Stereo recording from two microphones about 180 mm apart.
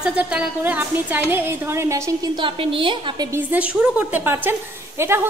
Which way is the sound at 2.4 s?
30° right (ahead or behind).